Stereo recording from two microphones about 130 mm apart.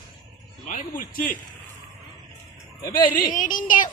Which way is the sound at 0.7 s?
90° left.